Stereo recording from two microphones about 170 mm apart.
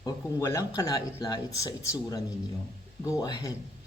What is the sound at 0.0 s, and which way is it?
Speech, 20° left (ahead or behind).